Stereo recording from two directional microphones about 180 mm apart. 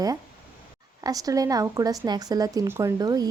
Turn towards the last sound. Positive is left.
turn(degrees=-20)  # may be behind; listen again after turning